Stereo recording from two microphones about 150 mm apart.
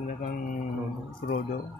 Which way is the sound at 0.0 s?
65° left (ahead or behind).